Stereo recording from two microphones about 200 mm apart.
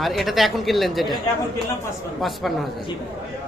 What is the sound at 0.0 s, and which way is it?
A man's voice, centre (ahead or behind).